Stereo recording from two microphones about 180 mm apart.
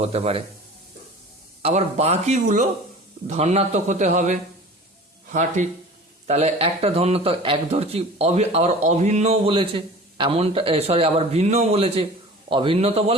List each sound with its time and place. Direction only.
0.0 s speech: 35° right (ahead or behind)
1.6 s speech: 35° right (ahead or behind)